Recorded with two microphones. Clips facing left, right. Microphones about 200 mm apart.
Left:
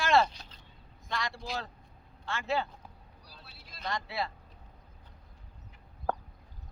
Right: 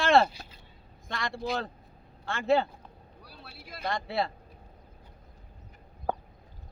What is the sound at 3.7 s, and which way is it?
Speech, 55° right (ahead or behind).